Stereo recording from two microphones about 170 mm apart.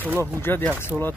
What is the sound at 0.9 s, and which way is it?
Speech, 5° right (ahead or behind).